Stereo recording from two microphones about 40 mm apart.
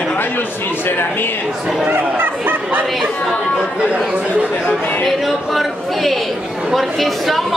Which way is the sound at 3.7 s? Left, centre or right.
Right.